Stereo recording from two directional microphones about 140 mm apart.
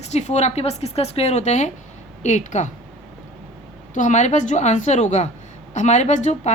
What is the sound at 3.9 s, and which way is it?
A woman's voice, 60° left (ahead or behind).